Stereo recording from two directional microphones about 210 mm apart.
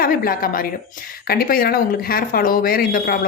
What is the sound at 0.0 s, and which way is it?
Speech, 45° left (ahead or behind).